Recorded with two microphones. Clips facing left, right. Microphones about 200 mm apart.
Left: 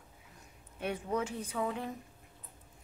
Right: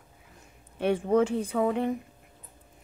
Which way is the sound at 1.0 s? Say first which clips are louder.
Right 12 dB; 55° right (ahead or behind).